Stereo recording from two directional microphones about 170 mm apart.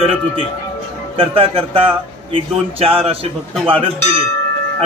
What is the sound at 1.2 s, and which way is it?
A man's voice, 35° right (ahead or behind).